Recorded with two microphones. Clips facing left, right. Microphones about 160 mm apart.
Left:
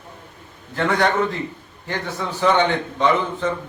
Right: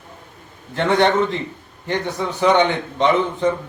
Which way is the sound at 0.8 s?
25° right (ahead or behind).